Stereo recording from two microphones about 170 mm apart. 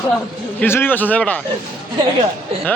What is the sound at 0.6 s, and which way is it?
Speech, 10° left (ahead or behind).